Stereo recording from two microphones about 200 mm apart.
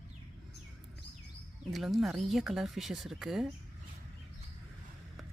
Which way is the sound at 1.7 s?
Centre (ahead or behind).